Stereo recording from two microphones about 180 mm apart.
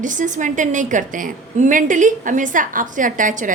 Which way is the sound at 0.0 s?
45° right (ahead or behind).